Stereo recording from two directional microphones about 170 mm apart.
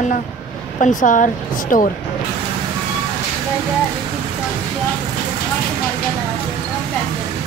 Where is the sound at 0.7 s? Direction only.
50° left (ahead or behind).